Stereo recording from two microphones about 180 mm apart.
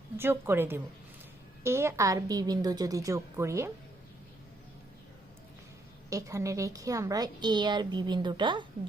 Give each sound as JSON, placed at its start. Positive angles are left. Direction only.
{"t": 0.2, "sound": "a woman's voice", "side_deg": -10}
{"t": 6.1, "sound": "a woman's voice", "side_deg": -20}